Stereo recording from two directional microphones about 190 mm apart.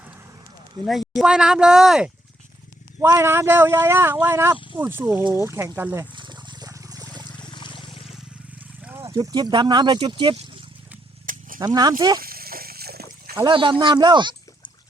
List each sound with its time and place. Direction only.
0.9 s speech: centre (ahead or behind)
3.0 s speech: 15° right (ahead or behind)
5.4 s a sound: 15° right (ahead or behind)
7.5 s trickle: 25° left (ahead or behind)
8.8 s speech: 10° right (ahead or behind)
11.3 s a sound: 45° right (ahead or behind)
11.6 s speech: 20° right (ahead or behind)
12.2 s a sound: 50° right (ahead or behind)
13.3 s speech: 25° right (ahead or behind)